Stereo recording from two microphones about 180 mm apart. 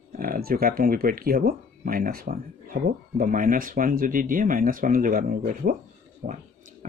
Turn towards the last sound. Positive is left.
turn(degrees=-45)  # may be behind; listen again after turning